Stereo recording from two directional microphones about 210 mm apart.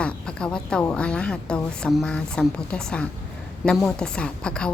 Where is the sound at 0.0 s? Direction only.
5° left (ahead or behind).